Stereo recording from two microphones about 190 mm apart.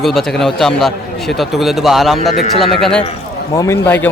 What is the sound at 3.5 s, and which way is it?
Speech, 15° left (ahead or behind).